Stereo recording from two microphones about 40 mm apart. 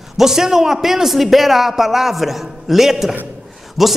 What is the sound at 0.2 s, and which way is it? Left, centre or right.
A man's voice, centre.